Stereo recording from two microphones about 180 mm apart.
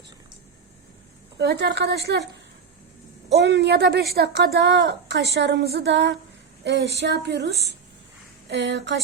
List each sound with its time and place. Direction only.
1.4 s a woman's voice: 70° right (ahead or behind)